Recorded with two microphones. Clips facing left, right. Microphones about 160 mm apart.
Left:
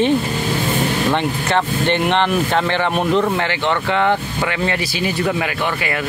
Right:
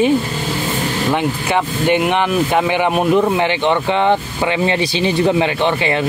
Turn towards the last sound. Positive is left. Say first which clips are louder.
# right 5 dB
turn(degrees=-25)  # may be behind; listen again after turning